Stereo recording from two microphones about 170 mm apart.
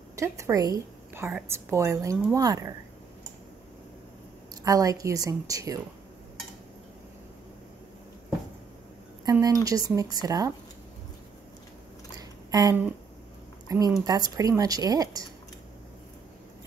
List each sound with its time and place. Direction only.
0.1 s a woman's voice: 20° right (ahead or behind)
4.6 s a woman's voice: 20° right (ahead or behind)
9.2 s a woman's voice: 20° right (ahead or behind)
12.2 s a sound: 20° right (ahead or behind)
13.7 s a woman's voice: 20° right (ahead or behind)